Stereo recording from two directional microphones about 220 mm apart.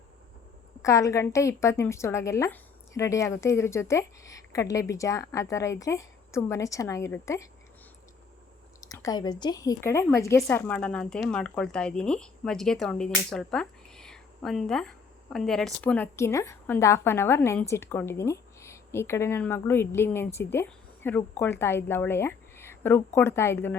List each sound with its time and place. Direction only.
0.8 s speech: 15° left (ahead or behind)
8.8 s speech: 15° left (ahead or behind)